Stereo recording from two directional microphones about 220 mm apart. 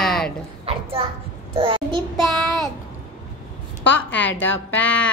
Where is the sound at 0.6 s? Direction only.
25° right (ahead or behind).